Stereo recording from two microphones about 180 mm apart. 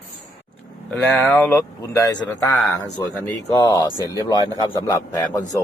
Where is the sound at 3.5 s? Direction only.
20° left (ahead or behind).